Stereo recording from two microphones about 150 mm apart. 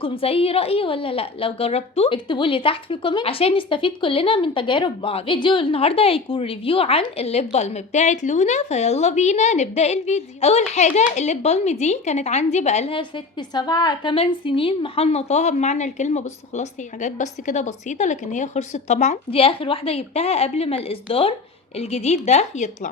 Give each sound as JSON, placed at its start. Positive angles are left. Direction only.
{"t": 0.0, "sound": "a woman's voice", "side_deg": 40}